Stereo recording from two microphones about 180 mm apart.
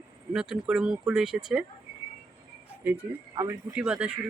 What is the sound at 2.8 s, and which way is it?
Speech, 10° right (ahead or behind).